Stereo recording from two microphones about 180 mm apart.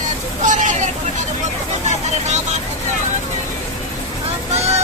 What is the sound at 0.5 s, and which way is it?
Hubbub, 45° right (ahead or behind).